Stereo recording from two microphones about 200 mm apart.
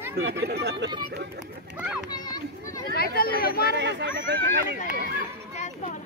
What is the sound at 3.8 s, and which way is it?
Speech, 60° right (ahead or behind).